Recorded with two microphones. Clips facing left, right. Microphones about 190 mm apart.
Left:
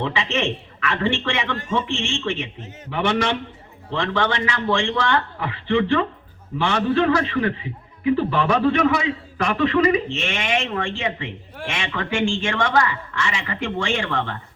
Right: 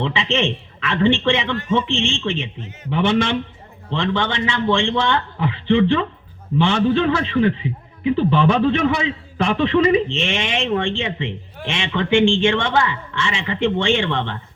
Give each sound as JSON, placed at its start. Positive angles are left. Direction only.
{"t": 0.0, "sound": "a man's voice", "side_deg": -25}